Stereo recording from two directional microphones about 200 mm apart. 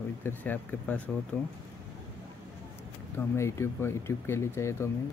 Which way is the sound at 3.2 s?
15° left (ahead or behind).